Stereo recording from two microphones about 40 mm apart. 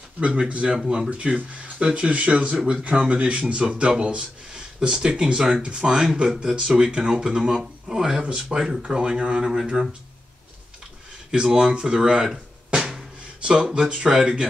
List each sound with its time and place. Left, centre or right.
0.5 s speech: right
0.7 s speech: centre
1.1 s speech: right
11.3 s speech: centre